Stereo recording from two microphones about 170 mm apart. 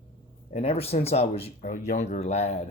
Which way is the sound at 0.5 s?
35° left (ahead or behind).